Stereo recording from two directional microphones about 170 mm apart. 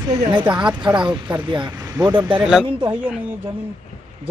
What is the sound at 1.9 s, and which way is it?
Speech, 15° right (ahead or behind).